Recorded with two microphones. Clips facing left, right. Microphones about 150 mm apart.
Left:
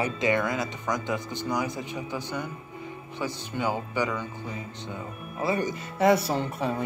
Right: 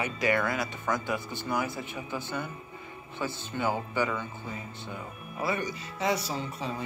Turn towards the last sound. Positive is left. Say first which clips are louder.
# left 6 dB
turn(degrees=60)  # may be behind; listen again after turning